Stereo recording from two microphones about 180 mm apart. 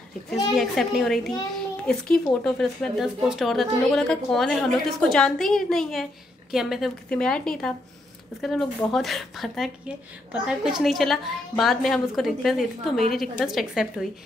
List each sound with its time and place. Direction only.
0.3 s a woman's voice: centre (ahead or behind)